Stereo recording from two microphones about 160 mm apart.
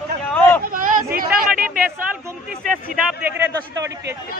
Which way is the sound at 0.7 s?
60° right (ahead or behind).